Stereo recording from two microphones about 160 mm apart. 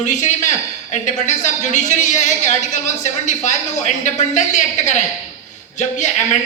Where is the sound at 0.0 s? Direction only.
50° left (ahead or behind).